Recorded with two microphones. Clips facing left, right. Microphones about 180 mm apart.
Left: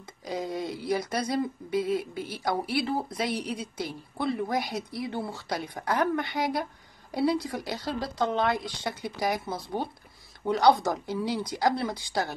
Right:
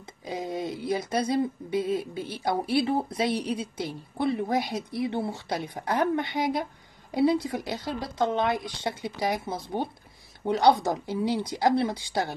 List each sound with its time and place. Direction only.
0.2 s speech: 20° right (ahead or behind)